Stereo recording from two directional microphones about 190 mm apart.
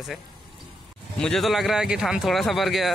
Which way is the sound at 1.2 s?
Centre (ahead or behind).